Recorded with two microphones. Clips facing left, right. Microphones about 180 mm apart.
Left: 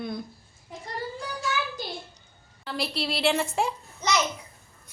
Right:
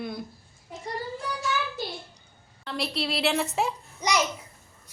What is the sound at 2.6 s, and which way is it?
A child's voice, centre (ahead or behind).